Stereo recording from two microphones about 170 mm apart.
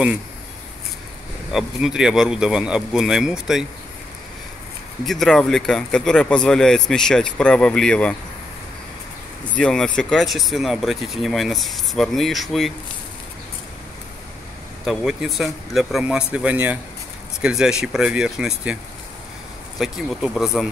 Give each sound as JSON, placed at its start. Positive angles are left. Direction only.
{"t": 1.5, "sound": "speech", "side_deg": 0}
{"t": 5.0, "sound": "speech", "side_deg": 0}
{"t": 9.6, "sound": "speech", "side_deg": 5}
{"t": 14.9, "sound": "speech", "side_deg": 0}
{"t": 19.8, "sound": "speech", "side_deg": 0}